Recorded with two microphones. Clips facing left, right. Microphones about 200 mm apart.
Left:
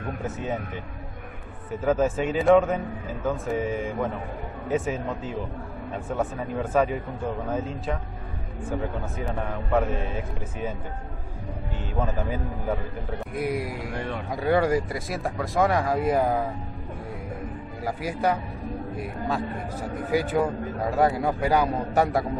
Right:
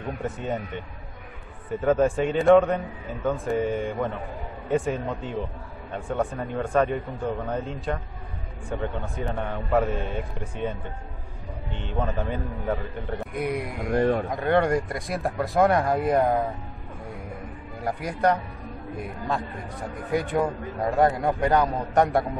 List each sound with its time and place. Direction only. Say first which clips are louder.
0.0 s speech: even; centre (ahead or behind)
11.8 s speech: even; 5° left (ahead or behind)
13.7 s a man's voice: right 9 dB; 50° right (ahead or behind)
14.3 s speech: even; 5° left (ahead or behind)
17.8 s speech: right 2 dB; 5° left (ahead or behind)